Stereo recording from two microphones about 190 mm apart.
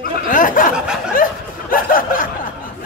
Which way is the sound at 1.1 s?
45° left (ahead or behind).